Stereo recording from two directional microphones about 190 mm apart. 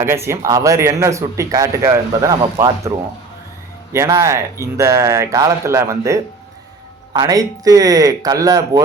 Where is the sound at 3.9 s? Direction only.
15° right (ahead or behind).